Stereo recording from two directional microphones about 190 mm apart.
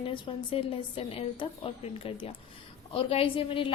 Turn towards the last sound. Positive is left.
turn(degrees=30)  # may be behind; listen again after turning